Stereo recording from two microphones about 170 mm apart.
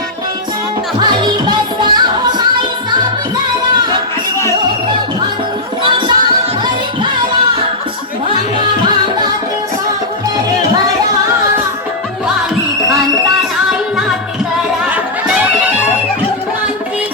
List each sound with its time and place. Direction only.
0.9 s music: 25° right (ahead or behind)
5.8 s music: 30° right (ahead or behind)